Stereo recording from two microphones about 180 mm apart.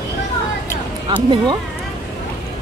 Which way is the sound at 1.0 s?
25° right (ahead or behind).